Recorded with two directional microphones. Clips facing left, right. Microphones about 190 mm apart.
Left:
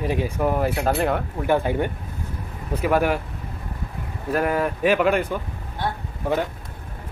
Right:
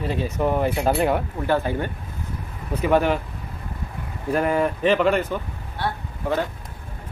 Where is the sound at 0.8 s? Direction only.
10° right (ahead or behind).